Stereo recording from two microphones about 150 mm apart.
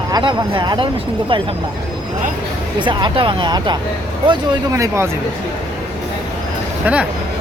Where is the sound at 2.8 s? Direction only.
30° right (ahead or behind).